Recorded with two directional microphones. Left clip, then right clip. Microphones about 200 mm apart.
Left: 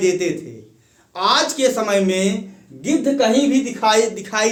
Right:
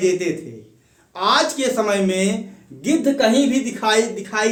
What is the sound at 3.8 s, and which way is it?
Speech, 30° left (ahead or behind).